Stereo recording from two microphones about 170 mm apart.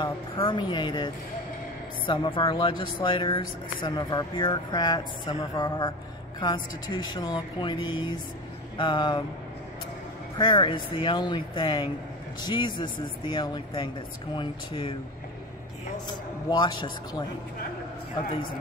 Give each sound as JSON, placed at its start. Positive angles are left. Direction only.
{"t": 0.0, "sound": "speech", "side_deg": 30}
{"t": 10.3, "sound": "speech", "side_deg": 25}
{"t": 16.1, "sound": "speech", "side_deg": 25}